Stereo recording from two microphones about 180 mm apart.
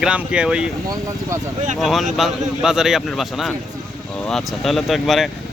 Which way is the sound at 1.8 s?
Centre (ahead or behind).